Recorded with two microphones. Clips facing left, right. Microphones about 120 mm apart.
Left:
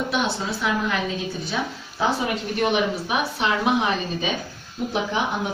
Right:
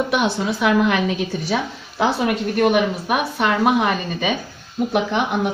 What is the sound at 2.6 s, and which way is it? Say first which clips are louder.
A woman's voice: right 4 dB; 50° right (ahead or behind).